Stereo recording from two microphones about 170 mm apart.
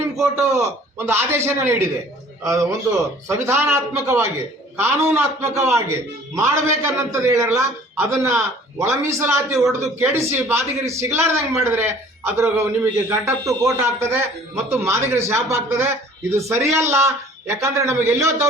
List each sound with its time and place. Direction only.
0.5 s a man's voice: 15° right (ahead or behind)